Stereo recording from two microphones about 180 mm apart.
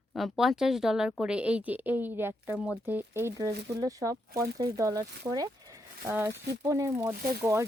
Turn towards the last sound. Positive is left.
turn(degrees=-15)  # may be behind; listen again after turning